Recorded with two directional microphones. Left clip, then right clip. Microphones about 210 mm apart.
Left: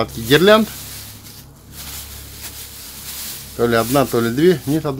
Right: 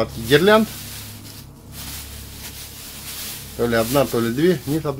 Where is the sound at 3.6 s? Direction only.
50° left (ahead or behind).